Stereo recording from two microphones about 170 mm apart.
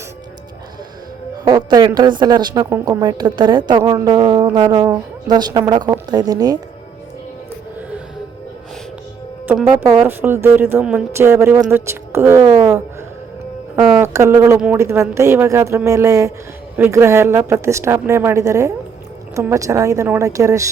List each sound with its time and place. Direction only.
1.5 s a woman's voice: 25° right (ahead or behind)
4.2 s music: 25° right (ahead or behind)
4.5 s a woman's voice: 25° right (ahead or behind)
10.0 s a woman's voice: 10° right (ahead or behind)
13.7 s a sound: 5° right (ahead or behind)
14.1 s a woman's voice: 15° right (ahead or behind)